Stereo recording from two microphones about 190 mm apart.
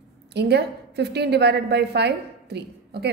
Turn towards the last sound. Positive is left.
turn(degrees=-60)  # may be behind; listen again after turning